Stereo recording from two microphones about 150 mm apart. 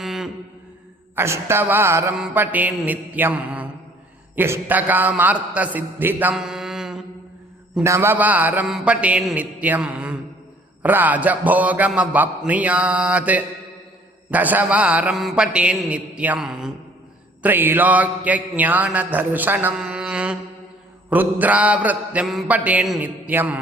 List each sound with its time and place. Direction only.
0.0 s a sound: centre (ahead or behind)
1.1 s mantra: 15° right (ahead or behind)
4.4 s a man's voice: 15° right (ahead or behind)
7.9 s mantra: 15° right (ahead or behind)